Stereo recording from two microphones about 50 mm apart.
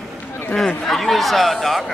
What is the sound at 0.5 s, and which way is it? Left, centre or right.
Speech, centre.